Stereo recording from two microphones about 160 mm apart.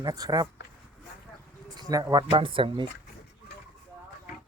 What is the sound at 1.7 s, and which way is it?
Speech, 25° right (ahead or behind).